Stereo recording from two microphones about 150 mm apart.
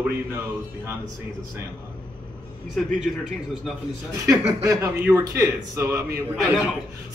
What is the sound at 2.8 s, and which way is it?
Speech, 5° left (ahead or behind).